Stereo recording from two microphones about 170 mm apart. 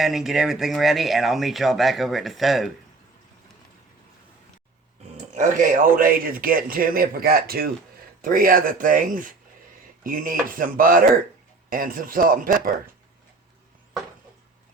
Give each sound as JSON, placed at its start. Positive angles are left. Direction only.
{"t": 0.0, "sound": "speech", "side_deg": 0}
{"t": 5.3, "sound": "a man's voice", "side_deg": -50}